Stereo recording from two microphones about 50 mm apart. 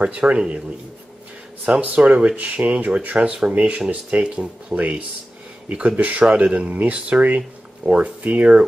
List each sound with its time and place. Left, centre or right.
0.3 s speech: right
1.7 s speech: right
4.7 s speech: right